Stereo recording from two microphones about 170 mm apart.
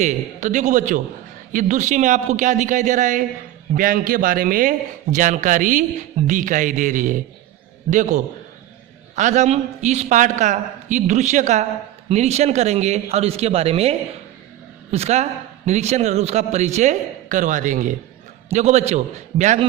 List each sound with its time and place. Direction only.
0.0 s a man's voice: 45° right (ahead or behind)